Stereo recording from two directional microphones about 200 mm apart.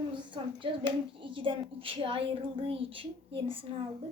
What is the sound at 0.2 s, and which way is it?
A woman's voice, 25° right (ahead or behind).